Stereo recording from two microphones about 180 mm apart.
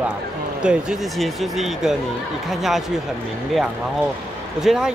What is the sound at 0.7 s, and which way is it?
Speech, centre (ahead or behind).